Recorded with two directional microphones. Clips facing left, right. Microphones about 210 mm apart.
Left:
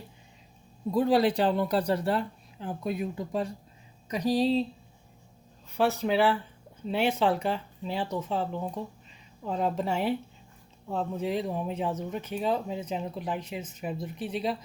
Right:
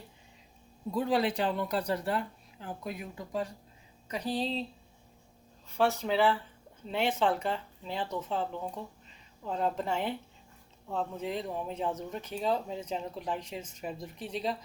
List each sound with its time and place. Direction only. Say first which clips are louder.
0.9 s speech: left 5 dB; 40° left (ahead or behind)
4.1 s speech: left 8 dB; 10° left (ahead or behind)
5.7 s speech: left 3 dB; 5° left (ahead or behind)
9.5 s speech: left 3 dB; 15° left (ahead or behind)